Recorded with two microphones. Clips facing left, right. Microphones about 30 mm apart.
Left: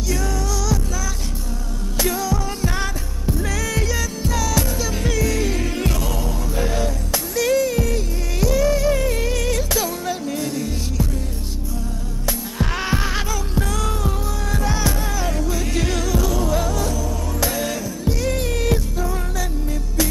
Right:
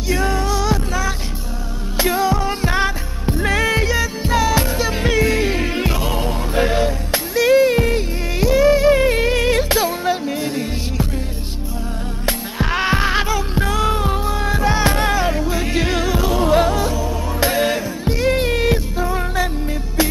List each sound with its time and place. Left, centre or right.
0.1 s music: right
12.5 s heart sounds: right
15.1 s music: right